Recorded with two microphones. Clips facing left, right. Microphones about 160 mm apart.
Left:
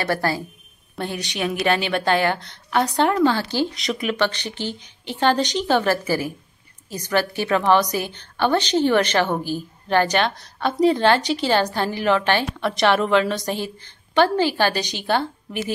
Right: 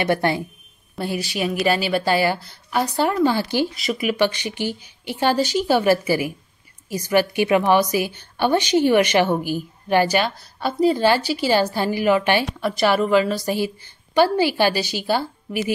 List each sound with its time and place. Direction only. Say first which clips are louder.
0.0 s a woman's voice: right 3 dB; 20° right (ahead or behind)
0.9 s a woman's voice: right 2 dB; 5° right (ahead or behind)